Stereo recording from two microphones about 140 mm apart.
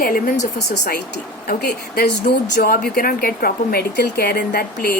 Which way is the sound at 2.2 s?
90° left.